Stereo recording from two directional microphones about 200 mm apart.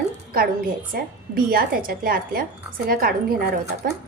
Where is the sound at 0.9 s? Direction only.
45° right (ahead or behind).